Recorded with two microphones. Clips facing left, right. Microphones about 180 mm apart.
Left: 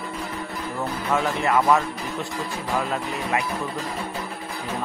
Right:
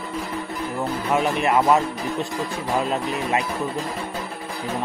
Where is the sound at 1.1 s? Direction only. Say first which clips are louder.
Right 2 dB; 20° right (ahead or behind).